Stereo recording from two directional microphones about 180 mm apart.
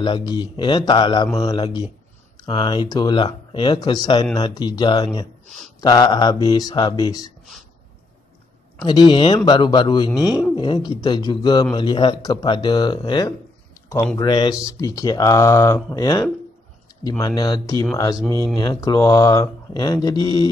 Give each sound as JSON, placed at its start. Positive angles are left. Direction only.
{"t": 0.0, "sound": "speech", "side_deg": 25}
{"t": 8.8, "sound": "speech", "side_deg": 25}
{"t": 17.4, "sound": "speech", "side_deg": 20}